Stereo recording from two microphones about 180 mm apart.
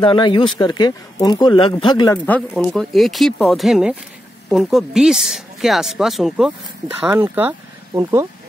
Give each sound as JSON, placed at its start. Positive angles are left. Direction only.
{"t": 0.0, "sound": "speech", "side_deg": 25}
{"t": 2.1, "sound": "speech", "side_deg": 10}